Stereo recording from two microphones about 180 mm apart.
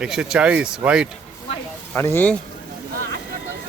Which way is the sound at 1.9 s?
10° left (ahead or behind).